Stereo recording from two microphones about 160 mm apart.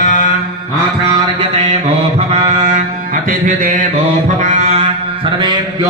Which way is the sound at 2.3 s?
40° right (ahead or behind).